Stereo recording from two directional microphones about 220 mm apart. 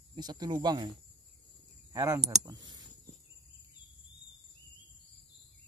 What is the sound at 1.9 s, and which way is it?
Speech, 15° right (ahead or behind).